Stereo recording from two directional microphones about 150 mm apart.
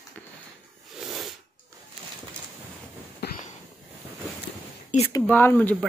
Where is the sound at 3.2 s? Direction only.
90° left.